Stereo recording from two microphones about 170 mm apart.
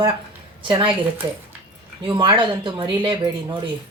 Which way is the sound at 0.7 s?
30° right (ahead or behind).